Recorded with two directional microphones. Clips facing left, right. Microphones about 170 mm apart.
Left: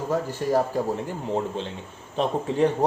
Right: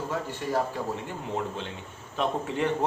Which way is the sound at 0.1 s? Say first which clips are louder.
Left 8 dB; 40° left (ahead or behind).